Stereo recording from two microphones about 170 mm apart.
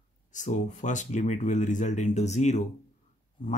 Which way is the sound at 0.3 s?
45° left (ahead or behind).